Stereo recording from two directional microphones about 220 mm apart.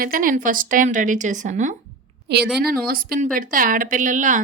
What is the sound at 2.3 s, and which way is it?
A woman's voice, 50° right (ahead or behind).